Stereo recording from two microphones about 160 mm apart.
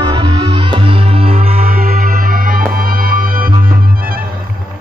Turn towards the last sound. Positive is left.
turn(degrees=-65)  # may be behind; listen again after turning